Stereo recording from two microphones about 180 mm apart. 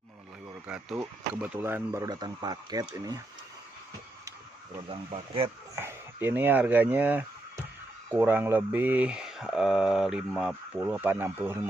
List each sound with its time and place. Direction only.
0.7 s speech: 5° right (ahead or behind)
4.8 s speech: 30° right (ahead or behind)
5.8 s speech: 15° right (ahead or behind)